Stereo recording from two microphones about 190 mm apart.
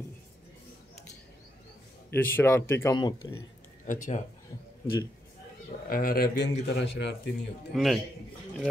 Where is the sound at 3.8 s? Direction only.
40° left (ahead or behind).